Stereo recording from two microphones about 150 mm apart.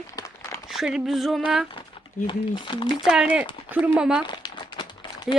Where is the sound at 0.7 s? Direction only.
5° right (ahead or behind).